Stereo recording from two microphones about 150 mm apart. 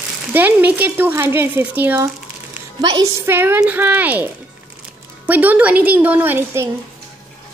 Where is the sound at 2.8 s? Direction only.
25° right (ahead or behind).